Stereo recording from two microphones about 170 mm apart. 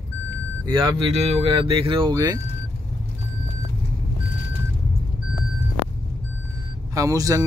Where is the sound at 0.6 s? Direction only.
30° right (ahead or behind).